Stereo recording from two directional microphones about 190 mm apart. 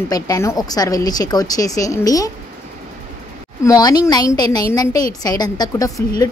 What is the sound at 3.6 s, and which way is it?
A woman's voice, 20° left (ahead or behind).